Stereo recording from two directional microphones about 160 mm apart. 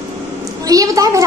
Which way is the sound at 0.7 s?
20° right (ahead or behind).